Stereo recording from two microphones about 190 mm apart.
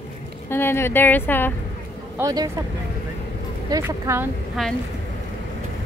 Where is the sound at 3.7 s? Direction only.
15° right (ahead or behind).